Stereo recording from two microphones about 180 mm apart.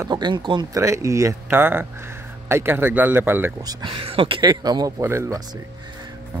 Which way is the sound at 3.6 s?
25° right (ahead or behind).